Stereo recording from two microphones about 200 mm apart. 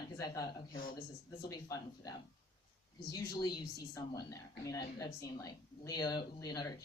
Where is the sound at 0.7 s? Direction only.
45° left (ahead or behind).